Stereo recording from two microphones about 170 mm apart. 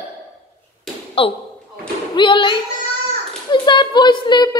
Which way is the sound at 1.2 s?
35° left (ahead or behind).